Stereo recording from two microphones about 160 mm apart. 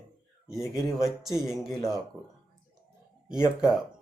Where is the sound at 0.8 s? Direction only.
Centre (ahead or behind).